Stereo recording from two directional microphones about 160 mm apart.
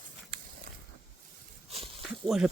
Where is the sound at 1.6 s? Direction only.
40° right (ahead or behind).